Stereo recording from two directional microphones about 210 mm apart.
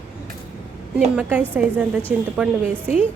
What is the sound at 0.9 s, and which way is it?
Speech, 5° right (ahead or behind).